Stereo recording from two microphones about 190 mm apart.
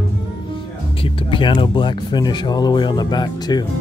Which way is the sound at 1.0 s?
25° left (ahead or behind).